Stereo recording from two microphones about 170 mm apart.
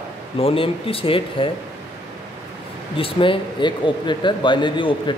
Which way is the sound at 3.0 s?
30° left (ahead or behind).